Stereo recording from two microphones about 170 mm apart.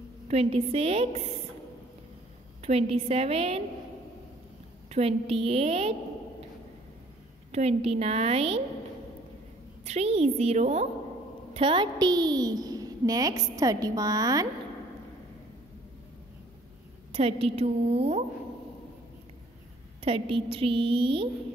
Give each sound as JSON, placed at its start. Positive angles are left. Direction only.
{"t": 0.3, "sound": "a woman's voice", "side_deg": -35}
{"t": 2.6, "sound": "a woman's voice", "side_deg": -35}
{"t": 4.8, "sound": "a woman's voice", "side_deg": -35}
{"t": 7.5, "sound": "a woman's voice", "side_deg": -40}
{"t": 9.8, "sound": "a woman's voice", "side_deg": -40}
{"t": 17.1, "sound": "a woman's voice", "side_deg": -35}
{"t": 20.0, "sound": "a woman's voice", "side_deg": -35}